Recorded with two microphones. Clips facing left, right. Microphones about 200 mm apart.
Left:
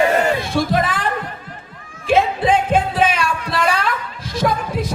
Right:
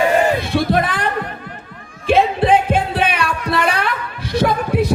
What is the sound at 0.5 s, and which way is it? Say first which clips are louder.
Speech: right 1 dB; 60° right (ahead or behind).